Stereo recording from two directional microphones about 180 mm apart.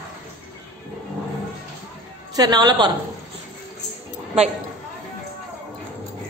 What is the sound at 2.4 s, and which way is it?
Speech, 20° right (ahead or behind).